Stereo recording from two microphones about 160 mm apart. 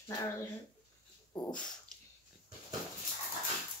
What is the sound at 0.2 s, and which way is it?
Speech, 20° left (ahead or behind).